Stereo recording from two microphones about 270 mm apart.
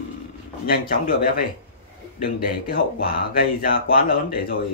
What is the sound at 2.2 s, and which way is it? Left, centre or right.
Speech, left.